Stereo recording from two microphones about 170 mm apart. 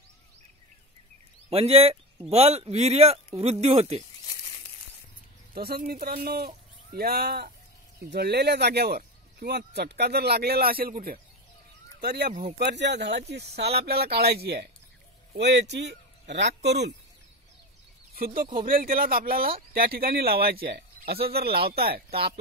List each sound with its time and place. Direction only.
1.5 s speech: 35° right (ahead or behind)
5.5 s speech: 65° right (ahead or behind)
12.0 s speech: 75° right (ahead or behind)
12.3 s speech: 45° right (ahead or behind)
12.5 s speech: 85° right
15.3 s a man's voice: 90° right
18.1 s speech: 55° right (ahead or behind)